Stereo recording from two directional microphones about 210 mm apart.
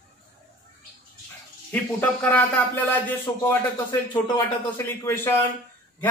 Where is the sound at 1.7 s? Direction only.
5° left (ahead or behind).